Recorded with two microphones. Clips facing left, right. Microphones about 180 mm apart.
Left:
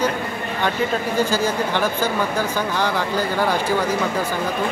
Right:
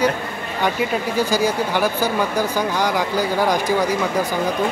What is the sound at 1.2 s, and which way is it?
Speech, 10° right (ahead or behind).